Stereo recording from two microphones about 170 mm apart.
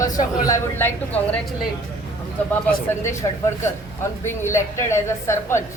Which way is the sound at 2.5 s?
15° left (ahead or behind).